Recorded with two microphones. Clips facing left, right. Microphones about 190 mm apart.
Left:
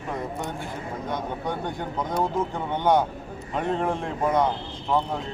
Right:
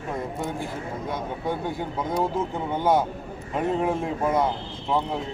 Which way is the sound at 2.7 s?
5° right (ahead or behind).